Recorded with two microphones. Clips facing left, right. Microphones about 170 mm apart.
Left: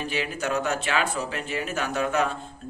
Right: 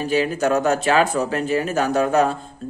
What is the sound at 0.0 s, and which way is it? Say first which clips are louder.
Speech: right 9 dB; 40° right (ahead or behind).